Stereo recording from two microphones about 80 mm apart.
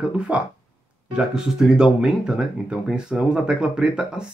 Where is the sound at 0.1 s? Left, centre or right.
Centre.